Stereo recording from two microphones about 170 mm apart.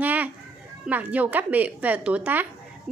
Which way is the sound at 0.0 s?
10° right (ahead or behind).